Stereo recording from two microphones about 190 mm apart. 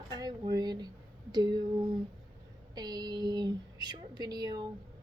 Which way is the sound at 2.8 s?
20° right (ahead or behind).